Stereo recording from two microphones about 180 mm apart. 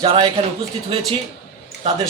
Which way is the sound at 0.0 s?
30° right (ahead or behind).